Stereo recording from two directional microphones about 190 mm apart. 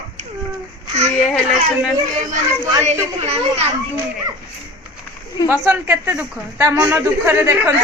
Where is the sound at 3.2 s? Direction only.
35° right (ahead or behind).